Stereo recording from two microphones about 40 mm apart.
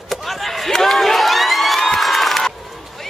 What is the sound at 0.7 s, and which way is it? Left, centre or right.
Crowd, centre.